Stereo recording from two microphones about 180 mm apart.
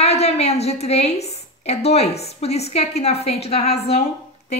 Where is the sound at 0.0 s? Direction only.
35° left (ahead or behind).